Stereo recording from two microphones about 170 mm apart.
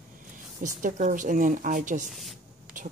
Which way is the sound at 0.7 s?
45° right (ahead or behind).